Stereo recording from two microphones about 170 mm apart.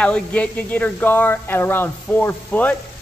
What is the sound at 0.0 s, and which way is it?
Speech, 5° left (ahead or behind).